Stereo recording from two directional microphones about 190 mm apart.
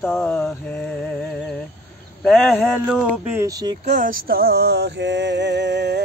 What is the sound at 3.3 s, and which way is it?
Speech, 20° right (ahead or behind).